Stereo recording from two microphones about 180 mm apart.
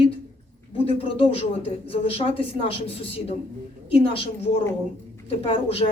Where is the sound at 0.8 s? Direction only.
30° left (ahead or behind).